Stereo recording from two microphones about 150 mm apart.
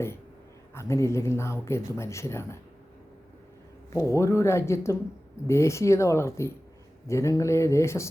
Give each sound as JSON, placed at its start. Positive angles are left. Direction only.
{"t": 0.7, "sound": "speech", "side_deg": 20}
{"t": 3.9, "sound": "speech", "side_deg": 20}